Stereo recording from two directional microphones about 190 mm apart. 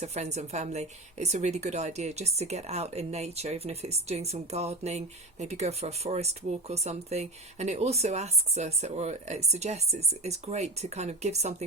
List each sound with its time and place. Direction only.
0.0 s a woman's voice: 35° right (ahead or behind)